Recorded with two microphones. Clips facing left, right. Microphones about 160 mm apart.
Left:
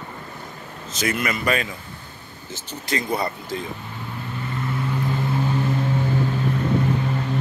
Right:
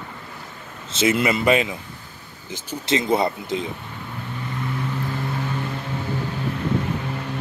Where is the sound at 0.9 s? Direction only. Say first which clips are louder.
Right 5 dB; 25° right (ahead or behind).